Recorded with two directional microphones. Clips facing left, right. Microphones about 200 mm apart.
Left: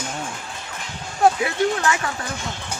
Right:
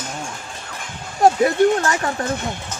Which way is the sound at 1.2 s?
40° right (ahead or behind).